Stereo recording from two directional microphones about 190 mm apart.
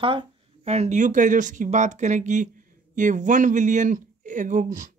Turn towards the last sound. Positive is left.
turn(degrees=-40)  # may be behind; listen again after turning